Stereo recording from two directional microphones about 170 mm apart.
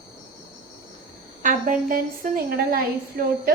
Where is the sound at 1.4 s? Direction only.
50° right (ahead or behind).